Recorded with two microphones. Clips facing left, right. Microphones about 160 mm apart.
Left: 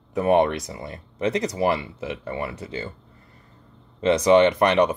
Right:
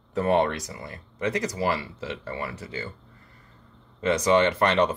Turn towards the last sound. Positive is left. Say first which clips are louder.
# left 3 dB
turn(degrees=15)  # may be behind; listen again after turning